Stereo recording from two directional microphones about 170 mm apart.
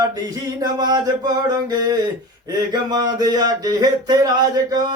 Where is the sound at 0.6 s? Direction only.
25° right (ahead or behind).